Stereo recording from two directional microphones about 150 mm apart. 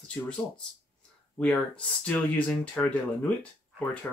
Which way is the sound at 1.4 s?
10° left (ahead or behind).